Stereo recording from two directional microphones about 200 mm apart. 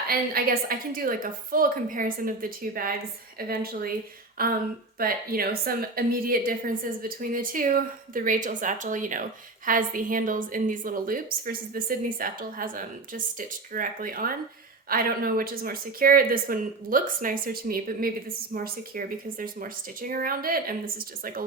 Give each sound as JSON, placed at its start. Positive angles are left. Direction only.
{"t": 0.1, "sound": "a woman's voice", "side_deg": -45}